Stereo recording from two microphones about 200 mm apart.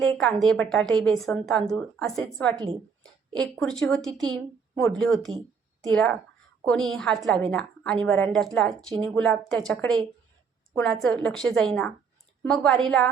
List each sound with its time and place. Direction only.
0.0 s a woman's voice: 5° left (ahead or behind)
2.6 s a sound: 20° right (ahead or behind)
3.6 s a woman's voice: 5° left (ahead or behind)
4.2 s a woman's voice: 20° right (ahead or behind)
4.7 s a woman's voice: 5° left (ahead or behind)